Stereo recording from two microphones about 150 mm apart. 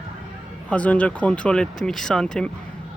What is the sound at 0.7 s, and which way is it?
Speech, 10° left (ahead or behind).